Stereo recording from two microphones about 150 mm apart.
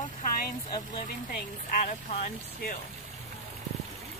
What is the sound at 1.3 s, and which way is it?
A woman's voice, 60° left (ahead or behind).